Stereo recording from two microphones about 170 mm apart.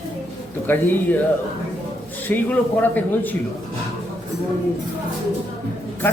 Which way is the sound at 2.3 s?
10° left (ahead or behind).